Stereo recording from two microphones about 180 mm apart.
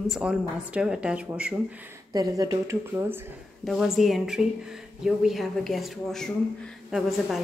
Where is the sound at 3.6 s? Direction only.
Centre (ahead or behind).